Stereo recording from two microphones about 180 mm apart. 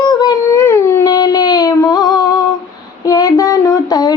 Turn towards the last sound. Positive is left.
turn(degrees=20)  # may be behind; listen again after turning